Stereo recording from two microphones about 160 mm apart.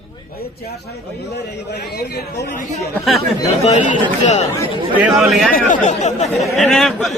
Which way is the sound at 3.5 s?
45° left (ahead or behind).